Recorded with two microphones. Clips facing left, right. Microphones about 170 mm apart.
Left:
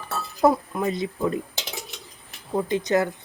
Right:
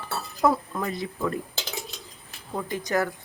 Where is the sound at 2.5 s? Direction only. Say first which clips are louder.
Left 5 dB; 20° left (ahead or behind).